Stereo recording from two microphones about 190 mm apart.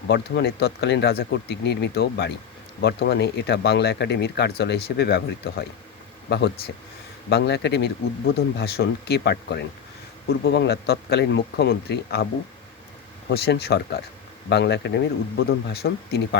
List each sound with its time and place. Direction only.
0.1 s speech: 60° left (ahead or behind)
7.3 s speech: 60° left (ahead or behind)